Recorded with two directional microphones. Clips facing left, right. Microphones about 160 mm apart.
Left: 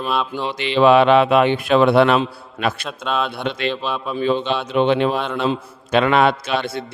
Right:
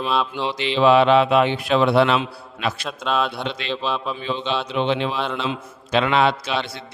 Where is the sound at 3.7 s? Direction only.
5° left (ahead or behind).